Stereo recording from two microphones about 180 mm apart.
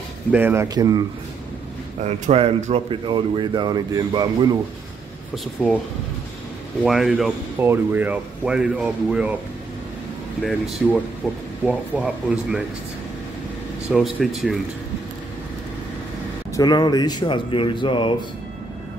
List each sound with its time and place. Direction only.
0.3 s speech: 10° right (ahead or behind)
0.7 s speech: 20° right (ahead or behind)
2.0 s speech: 35° right (ahead or behind)
5.3 s speech: 5° left (ahead or behind)
6.8 s speech: centre (ahead or behind)
10.8 s speech: centre (ahead or behind)
13.8 s speech: centre (ahead or behind)
16.5 s speech: 25° left (ahead or behind)